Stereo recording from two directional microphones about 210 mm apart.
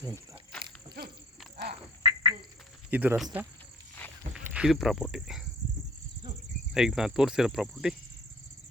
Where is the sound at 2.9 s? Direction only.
10° right (ahead or behind).